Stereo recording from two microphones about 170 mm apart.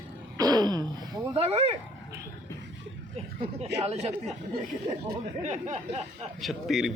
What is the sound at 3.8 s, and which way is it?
Speech, 40° right (ahead or behind).